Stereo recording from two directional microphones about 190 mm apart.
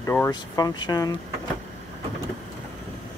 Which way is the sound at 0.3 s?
20° left (ahead or behind).